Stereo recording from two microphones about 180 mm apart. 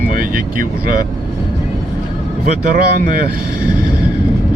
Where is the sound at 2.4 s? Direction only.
50° right (ahead or behind).